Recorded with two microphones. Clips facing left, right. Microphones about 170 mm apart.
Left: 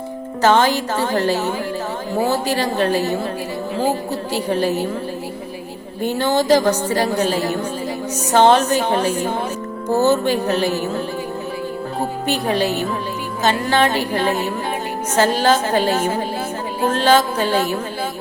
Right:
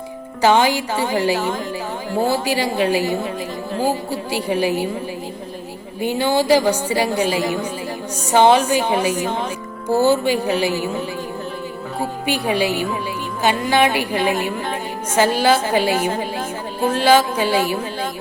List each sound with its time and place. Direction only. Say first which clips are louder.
0.4 s a woman's voice: even; 10° right (ahead or behind)
6.0 s a woman's voice: even; 10° right (ahead or behind)
12.2 s a woman's voice: even; 10° right (ahead or behind)